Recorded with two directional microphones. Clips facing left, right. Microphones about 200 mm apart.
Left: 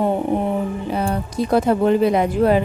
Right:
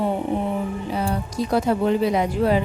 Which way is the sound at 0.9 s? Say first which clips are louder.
Left 2 dB; 55° left (ahead or behind).